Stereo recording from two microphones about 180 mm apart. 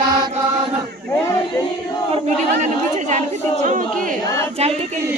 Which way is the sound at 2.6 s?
40° right (ahead or behind).